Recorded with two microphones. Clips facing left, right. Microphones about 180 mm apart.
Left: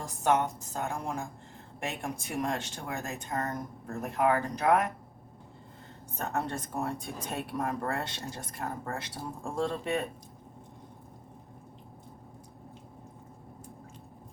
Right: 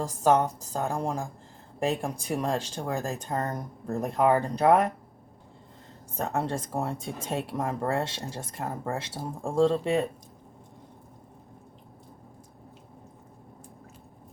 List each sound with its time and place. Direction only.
0.0 s speech: 35° right (ahead or behind)
6.3 s speech: 30° right (ahead or behind)